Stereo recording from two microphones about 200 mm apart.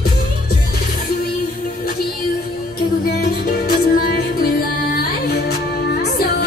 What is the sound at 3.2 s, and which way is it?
Music, 50° left (ahead or behind).